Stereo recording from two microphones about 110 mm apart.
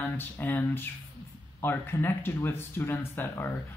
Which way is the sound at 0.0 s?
20° left (ahead or behind).